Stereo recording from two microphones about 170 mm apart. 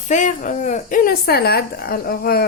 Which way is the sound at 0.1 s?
45° left (ahead or behind).